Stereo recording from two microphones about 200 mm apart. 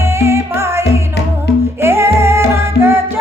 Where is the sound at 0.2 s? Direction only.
15° right (ahead or behind).